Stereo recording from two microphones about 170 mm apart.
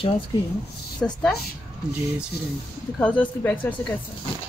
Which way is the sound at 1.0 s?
5° left (ahead or behind).